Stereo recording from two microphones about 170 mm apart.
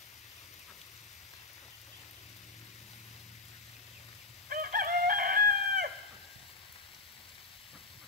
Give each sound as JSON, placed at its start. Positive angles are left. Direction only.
{"t": 4.5, "sound": "chicken", "side_deg": -55}